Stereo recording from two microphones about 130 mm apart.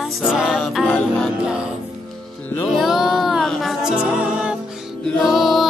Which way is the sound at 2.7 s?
Centre (ahead or behind).